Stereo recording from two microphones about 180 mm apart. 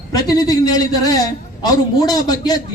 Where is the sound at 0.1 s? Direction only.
20° left (ahead or behind).